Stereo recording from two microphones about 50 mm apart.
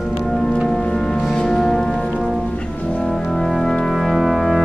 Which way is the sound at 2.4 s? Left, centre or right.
Centre.